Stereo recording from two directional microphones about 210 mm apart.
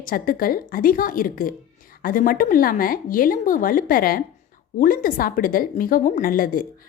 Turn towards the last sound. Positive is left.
turn(degrees=40)  # may be behind; listen again after turning